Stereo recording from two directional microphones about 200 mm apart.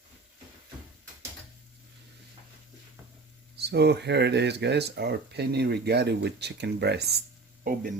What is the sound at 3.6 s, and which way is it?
Speech, 55° right (ahead or behind).